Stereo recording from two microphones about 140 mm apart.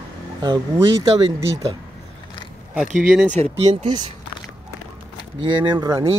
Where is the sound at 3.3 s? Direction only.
50° right (ahead or behind).